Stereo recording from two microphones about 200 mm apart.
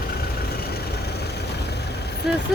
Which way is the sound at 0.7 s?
55° left (ahead or behind).